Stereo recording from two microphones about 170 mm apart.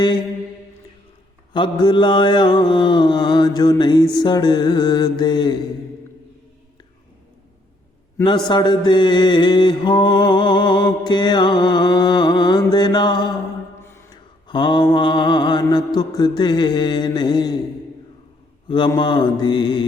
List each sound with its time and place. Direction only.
1.5 s mantra: 25° left (ahead or behind)
8.4 s mantra: 25° left (ahead or behind)
13.8 s mantra: 15° left (ahead or behind)
14.4 s mantra: 25° left (ahead or behind)
18.7 s mantra: 25° left (ahead or behind)